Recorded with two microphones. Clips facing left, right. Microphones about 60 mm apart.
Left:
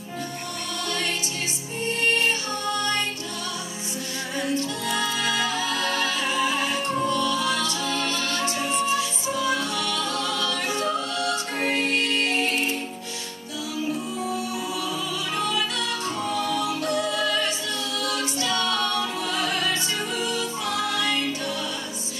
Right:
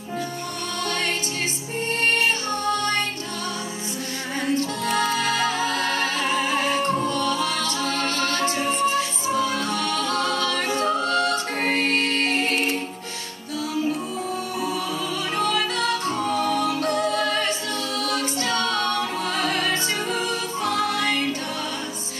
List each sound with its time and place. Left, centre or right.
2.1 s music: right
4.4 s music: right
15.3 s music: right